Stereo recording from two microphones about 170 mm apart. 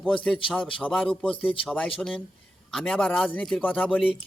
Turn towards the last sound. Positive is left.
turn(degrees=5)  # may be behind; listen again after turning